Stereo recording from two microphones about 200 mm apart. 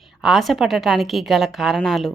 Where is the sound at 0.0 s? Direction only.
Centre (ahead or behind).